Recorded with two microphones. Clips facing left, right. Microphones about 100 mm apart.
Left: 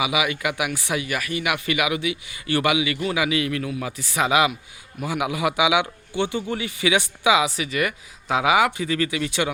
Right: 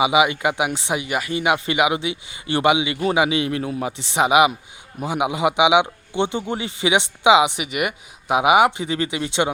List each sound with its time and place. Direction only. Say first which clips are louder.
0.0 s speech: right 6 dB; 25° right (ahead or behind)